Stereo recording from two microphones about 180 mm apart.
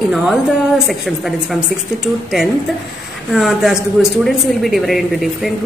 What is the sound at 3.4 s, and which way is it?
A woman's voice, centre (ahead or behind).